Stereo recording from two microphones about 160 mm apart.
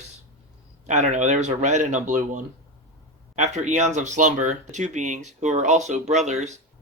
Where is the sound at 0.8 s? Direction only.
50° right (ahead or behind).